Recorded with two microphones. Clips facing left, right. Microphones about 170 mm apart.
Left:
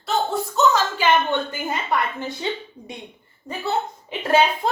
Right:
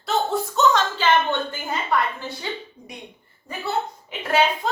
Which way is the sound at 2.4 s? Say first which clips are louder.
Left 4 dB; 25° left (ahead or behind).